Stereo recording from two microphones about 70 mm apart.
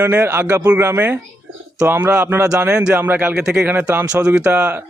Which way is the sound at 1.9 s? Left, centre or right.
Right.